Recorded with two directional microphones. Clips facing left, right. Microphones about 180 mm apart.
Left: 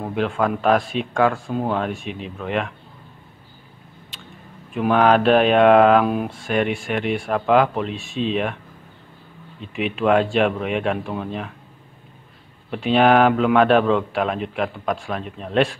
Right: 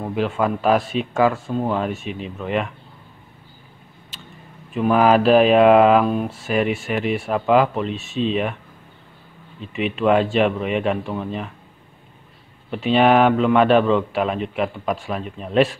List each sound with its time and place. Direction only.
0.0 s speech: centre (ahead or behind)
4.1 s a sound: centre (ahead or behind)
4.7 s speech: centre (ahead or behind)
9.6 s speech: centre (ahead or behind)
12.7 s speech: centre (ahead or behind)